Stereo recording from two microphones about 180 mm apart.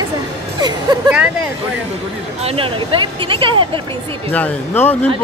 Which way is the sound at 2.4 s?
30° right (ahead or behind).